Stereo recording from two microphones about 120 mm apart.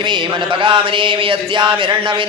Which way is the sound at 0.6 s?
45° right (ahead or behind).